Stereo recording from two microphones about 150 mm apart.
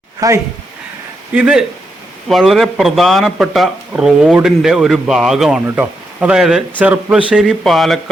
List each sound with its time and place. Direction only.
0.2 s speech: 20° right (ahead or behind)
1.3 s a man's voice: 5° right (ahead or behind)